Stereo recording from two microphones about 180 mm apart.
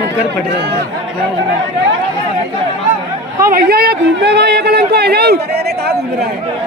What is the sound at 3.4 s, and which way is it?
Speech, 55° right (ahead or behind).